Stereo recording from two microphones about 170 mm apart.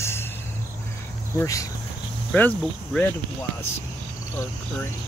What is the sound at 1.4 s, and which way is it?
Speech, 20° left (ahead or behind).